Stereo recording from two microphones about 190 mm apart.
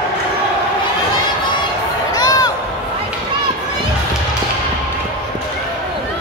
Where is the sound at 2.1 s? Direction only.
20° left (ahead or behind).